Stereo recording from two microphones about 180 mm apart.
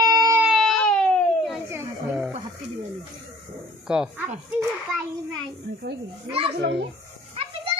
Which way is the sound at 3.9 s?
5° right (ahead or behind).